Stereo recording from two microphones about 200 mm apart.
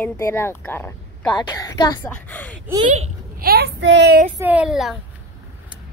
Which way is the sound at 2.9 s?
35° right (ahead or behind).